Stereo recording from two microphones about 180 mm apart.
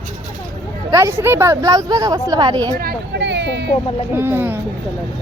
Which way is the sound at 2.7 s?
65° right (ahead or behind).